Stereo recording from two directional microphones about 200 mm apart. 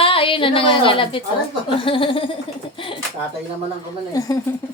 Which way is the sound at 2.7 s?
25° left (ahead or behind).